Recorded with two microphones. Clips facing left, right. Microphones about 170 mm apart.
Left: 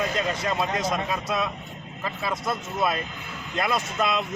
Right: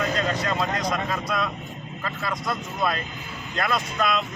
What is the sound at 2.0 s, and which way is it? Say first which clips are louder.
Speech: left 1 dB; 15° left (ahead or behind).